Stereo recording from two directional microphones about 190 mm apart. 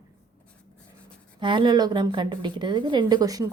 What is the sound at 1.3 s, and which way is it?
A woman's voice, 25° right (ahead or behind).